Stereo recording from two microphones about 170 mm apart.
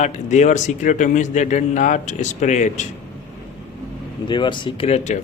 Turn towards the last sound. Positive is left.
turn(degrees=40)  # may be behind; listen again after turning